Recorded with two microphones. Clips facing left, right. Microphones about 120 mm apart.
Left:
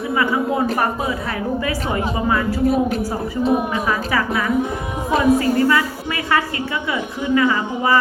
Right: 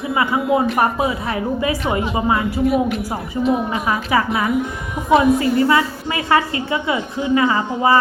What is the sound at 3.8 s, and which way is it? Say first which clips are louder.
Speech: right 2 dB; 25° right (ahead or behind).